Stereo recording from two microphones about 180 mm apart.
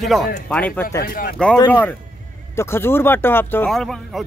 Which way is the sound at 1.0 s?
55° left (ahead or behind).